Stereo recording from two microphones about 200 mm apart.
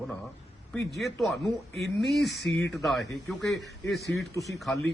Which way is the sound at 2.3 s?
55° left (ahead or behind).